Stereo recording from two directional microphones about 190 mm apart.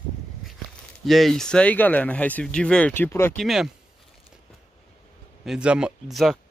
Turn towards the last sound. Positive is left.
turn(degrees=0)  # may be behind; listen again after turning